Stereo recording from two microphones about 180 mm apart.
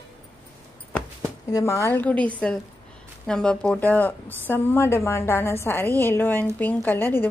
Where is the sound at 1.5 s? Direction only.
15° left (ahead or behind).